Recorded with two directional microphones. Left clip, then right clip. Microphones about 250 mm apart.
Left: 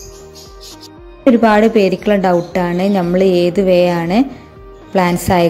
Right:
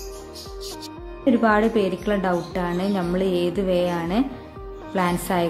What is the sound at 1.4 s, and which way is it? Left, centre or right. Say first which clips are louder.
A woman's voice: left 8 dB; left.